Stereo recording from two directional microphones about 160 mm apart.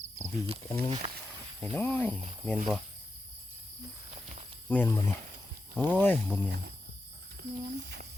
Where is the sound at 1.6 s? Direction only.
10° left (ahead or behind).